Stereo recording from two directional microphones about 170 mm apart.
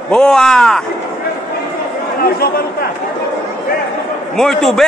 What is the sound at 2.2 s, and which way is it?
Speech, 65° left (ahead or behind).